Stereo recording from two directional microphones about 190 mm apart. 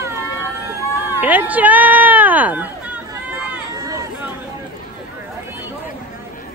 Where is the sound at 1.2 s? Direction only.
10° right (ahead or behind).